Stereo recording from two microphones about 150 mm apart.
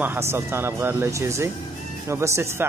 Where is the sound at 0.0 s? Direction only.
15° right (ahead or behind).